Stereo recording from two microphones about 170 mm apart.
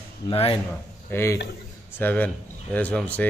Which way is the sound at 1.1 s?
15° left (ahead or behind).